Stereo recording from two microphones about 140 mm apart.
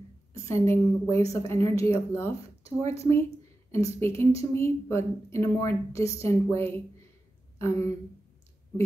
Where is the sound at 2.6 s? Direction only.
45° right (ahead or behind).